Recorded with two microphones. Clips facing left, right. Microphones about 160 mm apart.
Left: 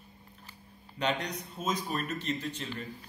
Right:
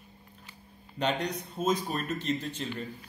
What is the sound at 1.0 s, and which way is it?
A man's voice, 30° right (ahead or behind).